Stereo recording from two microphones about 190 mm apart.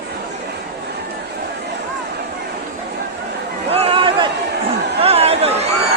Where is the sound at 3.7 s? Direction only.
30° right (ahead or behind).